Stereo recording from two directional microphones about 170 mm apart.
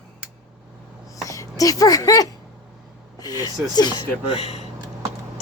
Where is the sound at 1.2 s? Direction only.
20° left (ahead or behind).